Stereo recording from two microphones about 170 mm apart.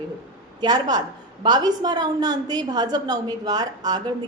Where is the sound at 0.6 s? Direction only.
25° right (ahead or behind).